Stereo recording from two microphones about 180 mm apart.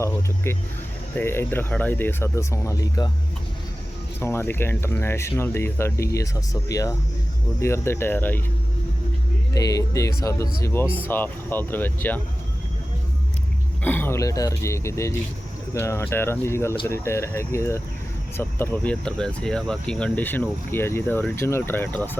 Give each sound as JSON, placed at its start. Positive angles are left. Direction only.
{"t": 0.0, "sound": "speech", "side_deg": 15}
{"t": 4.2, "sound": "speech", "side_deg": 15}
{"t": 9.5, "sound": "speech", "side_deg": 20}
{"t": 13.8, "sound": "speech", "side_deg": 10}